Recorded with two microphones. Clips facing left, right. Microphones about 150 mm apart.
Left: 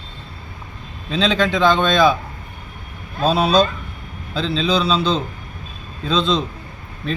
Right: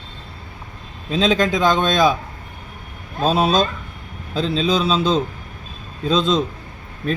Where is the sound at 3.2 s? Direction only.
45° right (ahead or behind).